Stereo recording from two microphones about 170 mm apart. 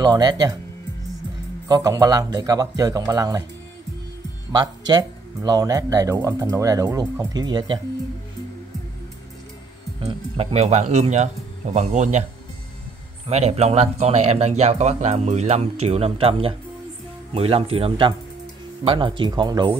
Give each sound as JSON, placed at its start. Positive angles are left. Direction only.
{"t": 0.0, "sound": "speech", "side_deg": -25}
{"t": 1.7, "sound": "speech", "side_deg": -20}
{"t": 4.5, "sound": "speech", "side_deg": -25}
{"t": 10.0, "sound": "speech", "side_deg": -35}
{"t": 13.3, "sound": "speech", "side_deg": -40}